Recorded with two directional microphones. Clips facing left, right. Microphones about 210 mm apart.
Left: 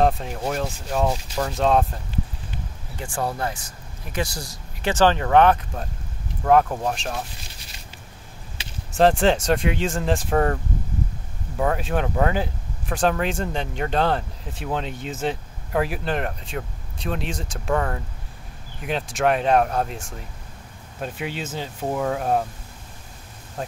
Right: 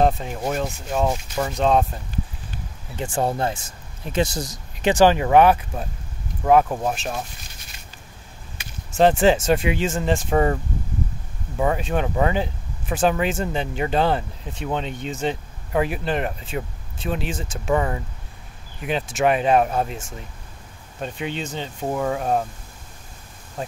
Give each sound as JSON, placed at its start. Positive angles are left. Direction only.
{"t": 0.0, "sound": "speech", "side_deg": 0}
{"t": 3.0, "sound": "speech", "side_deg": -25}
{"t": 8.9, "sound": "speech", "side_deg": 0}